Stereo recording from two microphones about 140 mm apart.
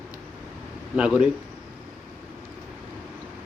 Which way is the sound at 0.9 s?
5° right (ahead or behind).